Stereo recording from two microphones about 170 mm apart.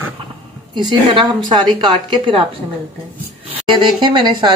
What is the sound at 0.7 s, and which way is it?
Speech, 25° right (ahead or behind).